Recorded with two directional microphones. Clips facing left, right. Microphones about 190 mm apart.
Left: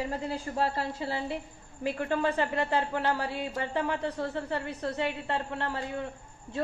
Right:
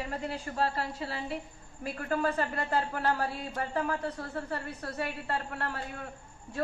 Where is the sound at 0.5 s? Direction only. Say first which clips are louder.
Left 1 dB; 25° left (ahead or behind).